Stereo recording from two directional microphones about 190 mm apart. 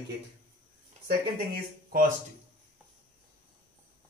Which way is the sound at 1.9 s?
45° right (ahead or behind).